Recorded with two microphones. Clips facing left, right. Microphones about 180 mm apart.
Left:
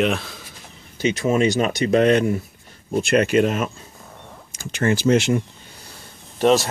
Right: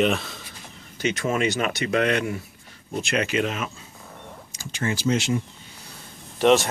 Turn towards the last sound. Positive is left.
turn(degrees=35)  # may be behind; listen again after turning